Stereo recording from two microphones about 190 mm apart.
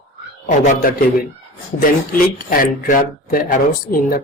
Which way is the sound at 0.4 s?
45° left (ahead or behind).